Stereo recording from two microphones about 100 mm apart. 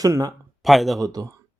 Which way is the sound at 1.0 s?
40° right (ahead or behind).